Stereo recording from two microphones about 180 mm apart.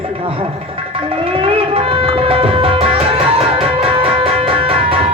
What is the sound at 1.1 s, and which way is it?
Music, 30° right (ahead or behind).